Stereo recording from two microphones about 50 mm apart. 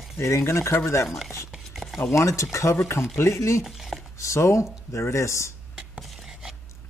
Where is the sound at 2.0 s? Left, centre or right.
Left.